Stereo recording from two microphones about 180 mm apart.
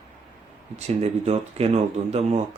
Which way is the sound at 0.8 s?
35° right (ahead or behind).